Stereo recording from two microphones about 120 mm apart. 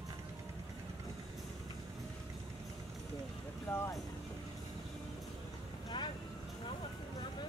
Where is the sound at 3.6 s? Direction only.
25° left (ahead or behind).